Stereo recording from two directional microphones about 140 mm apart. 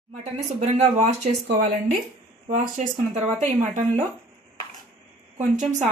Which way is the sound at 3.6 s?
55° right (ahead or behind).